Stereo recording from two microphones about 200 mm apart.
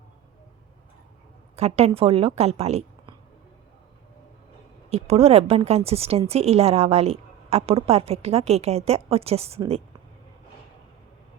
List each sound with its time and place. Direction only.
1.5 s a woman's voice: 30° right (ahead or behind)
4.9 s a woman's voice: 30° right (ahead or behind)